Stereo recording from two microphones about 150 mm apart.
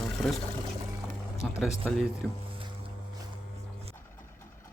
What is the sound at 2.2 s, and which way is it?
Speech, 5° left (ahead or behind).